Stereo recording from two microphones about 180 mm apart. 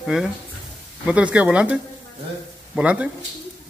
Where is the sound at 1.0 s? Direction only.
5° right (ahead or behind).